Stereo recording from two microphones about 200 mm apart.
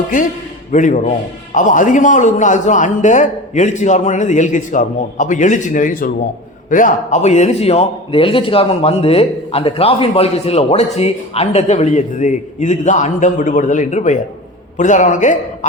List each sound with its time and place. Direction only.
0.7 s a man's voice: 40° left (ahead or behind)